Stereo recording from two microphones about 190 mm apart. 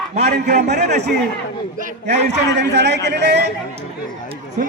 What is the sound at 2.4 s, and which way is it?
Speech, 65° right (ahead or behind).